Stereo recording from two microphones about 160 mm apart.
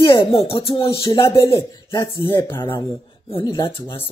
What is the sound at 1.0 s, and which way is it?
A man's voice, 20° left (ahead or behind).